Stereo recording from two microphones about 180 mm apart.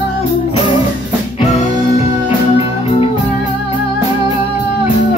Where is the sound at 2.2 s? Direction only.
30° left (ahead or behind).